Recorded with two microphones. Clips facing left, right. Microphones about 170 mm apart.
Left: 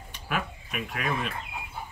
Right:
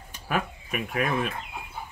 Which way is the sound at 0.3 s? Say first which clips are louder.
Right 3 dB; 45° right (ahead or behind).